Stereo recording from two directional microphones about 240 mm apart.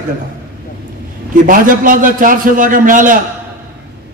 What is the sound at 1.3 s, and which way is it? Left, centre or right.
A man's voice, right.